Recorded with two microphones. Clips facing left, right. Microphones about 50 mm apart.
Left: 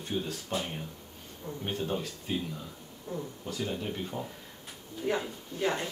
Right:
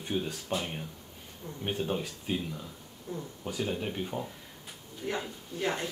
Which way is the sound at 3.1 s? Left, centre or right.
Centre.